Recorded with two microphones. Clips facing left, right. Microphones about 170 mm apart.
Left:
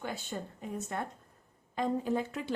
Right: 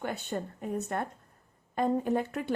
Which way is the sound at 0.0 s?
60° right (ahead or behind).